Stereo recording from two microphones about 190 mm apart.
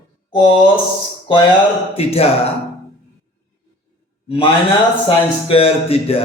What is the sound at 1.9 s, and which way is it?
Speech, 30° left (ahead or behind).